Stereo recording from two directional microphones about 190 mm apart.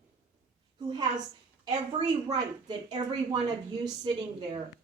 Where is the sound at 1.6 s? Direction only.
25° right (ahead or behind).